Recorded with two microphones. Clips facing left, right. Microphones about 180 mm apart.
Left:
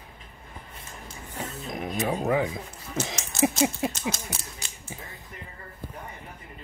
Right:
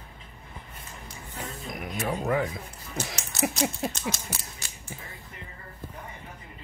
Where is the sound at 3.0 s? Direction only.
20° left (ahead or behind).